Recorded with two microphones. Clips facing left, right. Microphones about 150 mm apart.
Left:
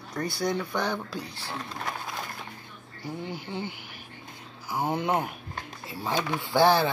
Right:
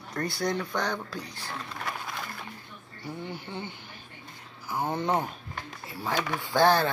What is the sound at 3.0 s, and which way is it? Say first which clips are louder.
Speech: left 2 dB; 15° left (ahead or behind).